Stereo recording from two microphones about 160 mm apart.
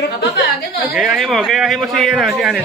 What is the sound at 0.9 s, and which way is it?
A man's voice, 5° right (ahead or behind).